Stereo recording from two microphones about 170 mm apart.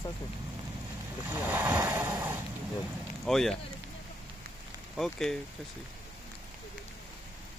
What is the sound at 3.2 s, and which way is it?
Speech, centre (ahead or behind).